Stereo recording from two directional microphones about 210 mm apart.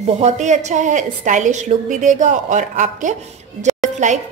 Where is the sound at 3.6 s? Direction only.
35° right (ahead or behind).